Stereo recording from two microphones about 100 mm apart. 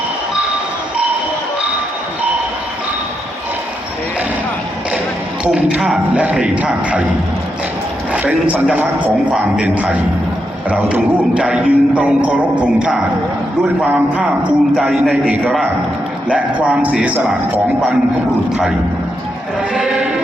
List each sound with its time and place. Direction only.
5.5 s speech: 10° right (ahead or behind)
8.1 s speech: 15° right (ahead or behind)
16.3 s speech: 15° right (ahead or behind)
19.7 s music: 10° right (ahead or behind)